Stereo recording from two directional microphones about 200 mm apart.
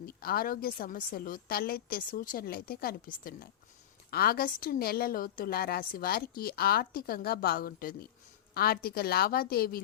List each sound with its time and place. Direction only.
0.0 s a woman's voice: 50° left (ahead or behind)